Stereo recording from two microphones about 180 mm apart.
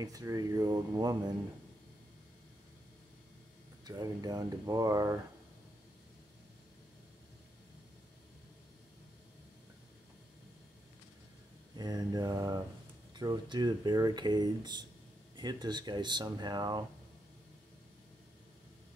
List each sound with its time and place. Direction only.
0.0 s speech: 20° right (ahead or behind)
3.8 s speech: 20° right (ahead or behind)
11.7 s speech: 20° right (ahead or behind)